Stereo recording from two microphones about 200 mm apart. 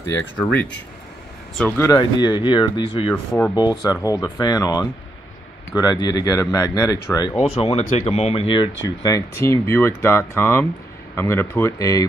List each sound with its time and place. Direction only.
1.6 s speech: 15° left (ahead or behind)